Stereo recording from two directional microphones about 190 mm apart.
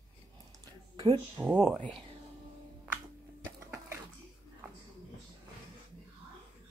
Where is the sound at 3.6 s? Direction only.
15° right (ahead or behind).